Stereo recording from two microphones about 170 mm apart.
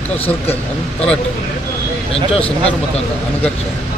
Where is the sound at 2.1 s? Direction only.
35° left (ahead or behind).